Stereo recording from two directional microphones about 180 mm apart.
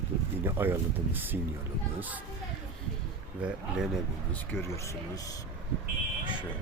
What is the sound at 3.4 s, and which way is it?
Speech, 5° right (ahead or behind).